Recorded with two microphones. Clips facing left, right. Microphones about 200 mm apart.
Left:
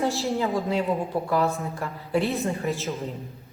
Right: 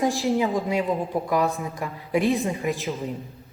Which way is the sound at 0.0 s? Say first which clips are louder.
Right 3 dB; 15° right (ahead or behind).